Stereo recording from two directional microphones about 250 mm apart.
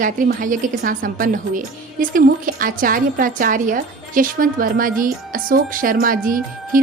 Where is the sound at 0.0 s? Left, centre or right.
Right.